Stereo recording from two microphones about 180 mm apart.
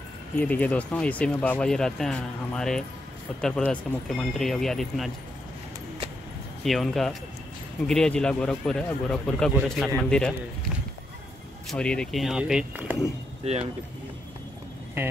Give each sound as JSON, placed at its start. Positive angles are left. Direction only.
{"t": 0.4, "sound": "speech", "side_deg": 10}
{"t": 6.6, "sound": "speech", "side_deg": 0}
{"t": 11.7, "sound": "speech", "side_deg": 5}
{"t": 13.4, "sound": "speech", "side_deg": -35}